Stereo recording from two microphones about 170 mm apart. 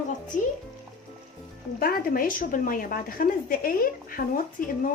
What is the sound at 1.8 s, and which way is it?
A woman's voice, 60° left (ahead or behind).